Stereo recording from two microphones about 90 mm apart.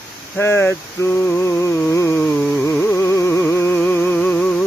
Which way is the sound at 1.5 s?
30° left (ahead or behind).